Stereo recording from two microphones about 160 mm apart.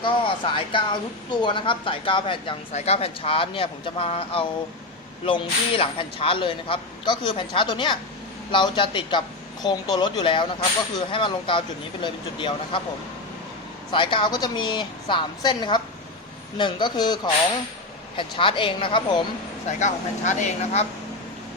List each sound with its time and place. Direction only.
0.0 s a woman's voice: 30° left (ahead or behind)
13.9 s a woman's voice: 30° left (ahead or behind)
18.2 s speech: 30° left (ahead or behind)
19.8 s speech: 50° left (ahead or behind)